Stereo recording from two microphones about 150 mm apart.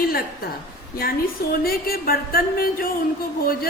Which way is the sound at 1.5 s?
90° left.